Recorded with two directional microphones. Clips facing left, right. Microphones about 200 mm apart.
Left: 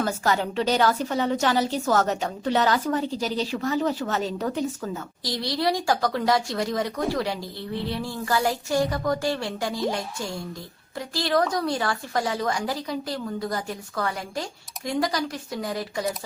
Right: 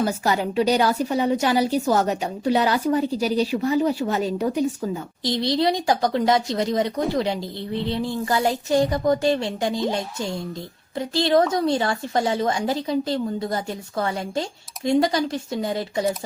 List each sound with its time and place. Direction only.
0.0 s a woman's voice: 15° right (ahead or behind)